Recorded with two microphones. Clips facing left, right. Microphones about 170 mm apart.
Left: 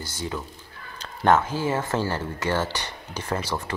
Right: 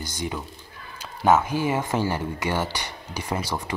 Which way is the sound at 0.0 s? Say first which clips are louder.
Right 1 dB; 15° right (ahead or behind).